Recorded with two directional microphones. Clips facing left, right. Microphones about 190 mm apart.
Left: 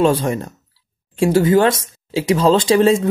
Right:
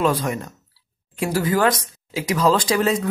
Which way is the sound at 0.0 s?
30° left (ahead or behind).